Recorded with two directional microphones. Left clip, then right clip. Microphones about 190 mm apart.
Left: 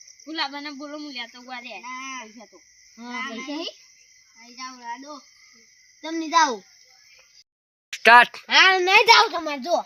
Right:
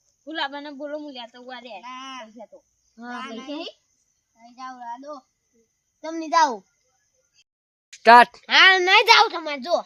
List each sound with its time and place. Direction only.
0.3 s speech: 35° right (ahead or behind)
1.6 s a child's voice: centre (ahead or behind)
3.0 s a woman's voice: 20° right (ahead or behind)
4.6 s speech: 15° right (ahead or behind)
6.1 s a child's voice: centre (ahead or behind)
7.9 s speech: 10° right (ahead or behind)
8.4 s a woman's voice: 25° right (ahead or behind)